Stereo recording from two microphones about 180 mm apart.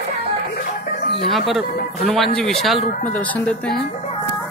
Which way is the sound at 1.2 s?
Centre (ahead or behind).